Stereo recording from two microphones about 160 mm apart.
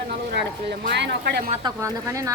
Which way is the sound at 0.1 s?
90° right.